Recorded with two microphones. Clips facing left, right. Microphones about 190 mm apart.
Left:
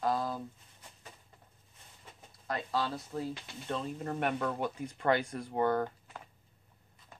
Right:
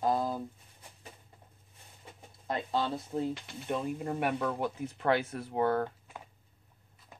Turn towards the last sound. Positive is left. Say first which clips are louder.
# right 1 dB
turn(degrees=-5)  # may be behind; listen again after turning